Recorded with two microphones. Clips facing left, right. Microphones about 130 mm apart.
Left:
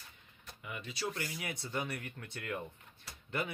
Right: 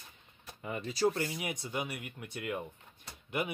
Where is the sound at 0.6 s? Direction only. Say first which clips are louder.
Right 9 dB; 40° right (ahead or behind).